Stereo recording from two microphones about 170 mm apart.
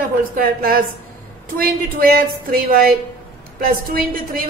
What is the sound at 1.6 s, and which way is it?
A woman's voice, 60° right (ahead or behind).